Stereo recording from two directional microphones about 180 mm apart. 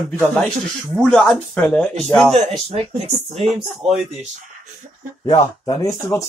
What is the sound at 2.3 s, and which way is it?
Speech, 35° right (ahead or behind).